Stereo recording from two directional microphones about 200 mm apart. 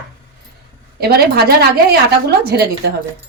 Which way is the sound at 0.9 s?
50° right (ahead or behind).